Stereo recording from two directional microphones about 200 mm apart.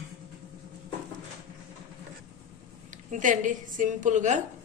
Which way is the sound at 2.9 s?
40° right (ahead or behind).